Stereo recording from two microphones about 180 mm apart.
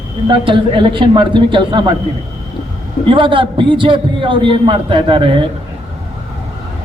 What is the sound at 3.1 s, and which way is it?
A man's voice, 30° right (ahead or behind).